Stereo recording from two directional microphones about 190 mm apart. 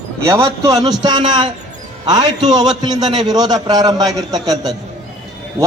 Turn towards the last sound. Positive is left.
turn(degrees=-20)  # may be behind; listen again after turning